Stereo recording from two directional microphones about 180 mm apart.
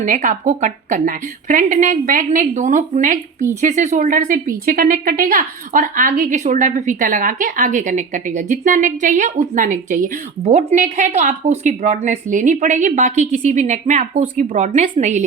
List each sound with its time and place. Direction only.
0.0 s a woman's voice: 50° right (ahead or behind)